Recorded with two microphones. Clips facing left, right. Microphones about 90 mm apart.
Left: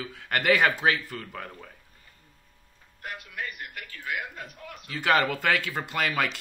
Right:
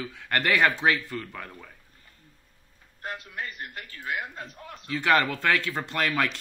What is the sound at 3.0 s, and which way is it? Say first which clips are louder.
A man's voice: right 1 dB; 30° right (ahead or behind).